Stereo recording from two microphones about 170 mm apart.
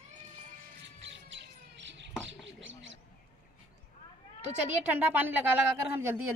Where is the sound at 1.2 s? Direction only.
90° right.